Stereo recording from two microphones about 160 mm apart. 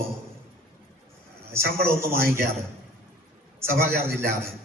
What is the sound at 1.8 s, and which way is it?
Speech, 15° right (ahead or behind).